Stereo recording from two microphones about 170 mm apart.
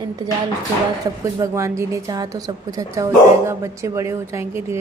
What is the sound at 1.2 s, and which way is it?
A woman's voice, 15° right (ahead or behind).